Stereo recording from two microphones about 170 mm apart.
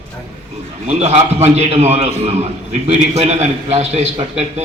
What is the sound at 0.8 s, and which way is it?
A man's voice, 40° right (ahead or behind).